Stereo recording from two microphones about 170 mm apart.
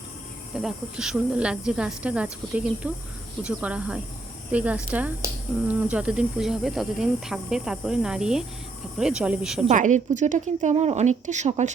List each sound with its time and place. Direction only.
0.5 s speech: 5° right (ahead or behind)
9.6 s a woman's voice: 45° right (ahead or behind)